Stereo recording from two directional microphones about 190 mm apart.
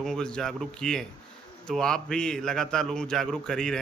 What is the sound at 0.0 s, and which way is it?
A man's voice, 5° left (ahead or behind).